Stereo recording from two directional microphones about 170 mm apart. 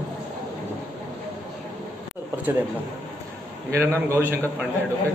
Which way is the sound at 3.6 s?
15° right (ahead or behind).